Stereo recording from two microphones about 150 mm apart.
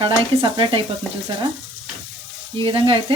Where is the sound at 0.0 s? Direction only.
35° right (ahead or behind).